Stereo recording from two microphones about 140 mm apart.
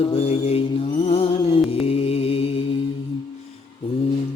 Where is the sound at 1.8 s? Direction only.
45° left (ahead or behind).